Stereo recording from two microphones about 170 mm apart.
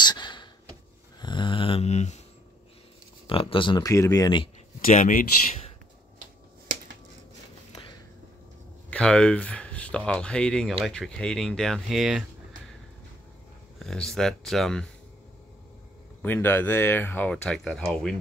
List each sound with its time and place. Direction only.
0.0 s a sound: 25° left (ahead or behind); by 2.1 s 40° left (ahead or behind)
3.3 s speech: 30° left (ahead or behind)
4.8 s speech: 50° left (ahead or behind)
8.9 s speech: 5° left (ahead or behind)
13.7 s speech: centre (ahead or behind)
16.2 s speech: 10° left (ahead or behind)